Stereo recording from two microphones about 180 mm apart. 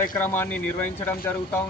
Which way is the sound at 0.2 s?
10° left (ahead or behind).